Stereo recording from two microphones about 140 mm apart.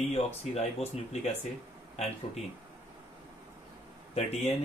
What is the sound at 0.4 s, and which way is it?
Speech, 50° left (ahead or behind).